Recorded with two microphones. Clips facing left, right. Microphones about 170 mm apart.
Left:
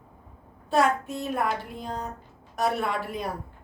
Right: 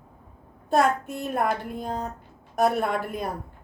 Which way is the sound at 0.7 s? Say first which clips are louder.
Right 1 dB; 55° right (ahead or behind).